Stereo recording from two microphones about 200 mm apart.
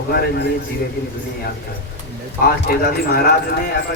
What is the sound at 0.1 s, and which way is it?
Speech, 55° left (ahead or behind).